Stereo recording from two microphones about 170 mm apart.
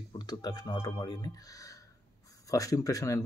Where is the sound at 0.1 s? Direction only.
25° left (ahead or behind).